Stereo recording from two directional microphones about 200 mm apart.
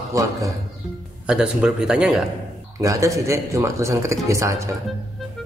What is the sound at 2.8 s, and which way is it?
Speech, 15° right (ahead or behind).